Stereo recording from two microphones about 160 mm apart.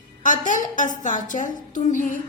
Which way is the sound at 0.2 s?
55° left (ahead or behind).